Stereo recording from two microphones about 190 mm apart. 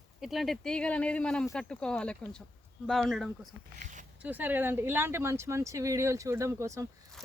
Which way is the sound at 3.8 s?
40° right (ahead or behind).